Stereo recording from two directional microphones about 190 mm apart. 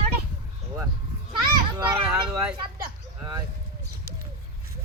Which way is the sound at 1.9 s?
20° right (ahead or behind).